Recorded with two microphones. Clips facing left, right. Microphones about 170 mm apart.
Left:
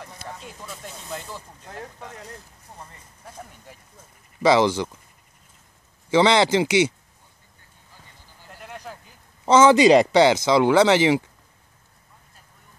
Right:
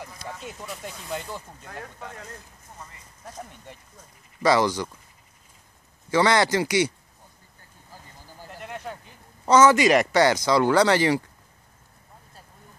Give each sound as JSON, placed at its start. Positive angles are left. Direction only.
{"t": 0.2, "sound": "speech", "side_deg": -5}
{"t": 3.3, "sound": "speech", "side_deg": 5}
{"t": 4.4, "sound": "speech", "side_deg": 25}
{"t": 6.0, "sound": "speech", "side_deg": 20}
{"t": 8.5, "sound": "a sound", "side_deg": 0}
{"t": 9.5, "sound": "speech", "side_deg": 25}